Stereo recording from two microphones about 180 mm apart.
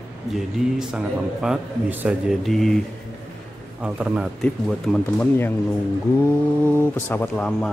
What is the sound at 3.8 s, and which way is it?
Speech, 5° right (ahead or behind).